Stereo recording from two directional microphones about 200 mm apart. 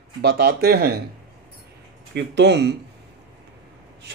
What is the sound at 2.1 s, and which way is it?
Speech, 60° right (ahead or behind).